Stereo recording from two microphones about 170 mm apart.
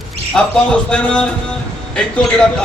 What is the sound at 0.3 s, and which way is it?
Speech, 5° left (ahead or behind).